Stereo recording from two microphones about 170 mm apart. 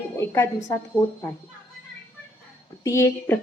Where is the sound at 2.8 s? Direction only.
15° left (ahead or behind).